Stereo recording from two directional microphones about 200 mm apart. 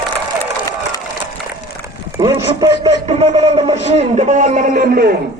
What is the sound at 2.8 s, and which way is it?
A man's voice, 30° right (ahead or behind).